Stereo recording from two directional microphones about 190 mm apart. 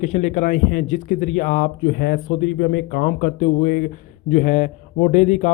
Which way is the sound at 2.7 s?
55° left (ahead or behind).